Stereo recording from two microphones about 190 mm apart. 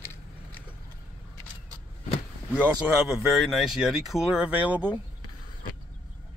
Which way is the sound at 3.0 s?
5° right (ahead or behind).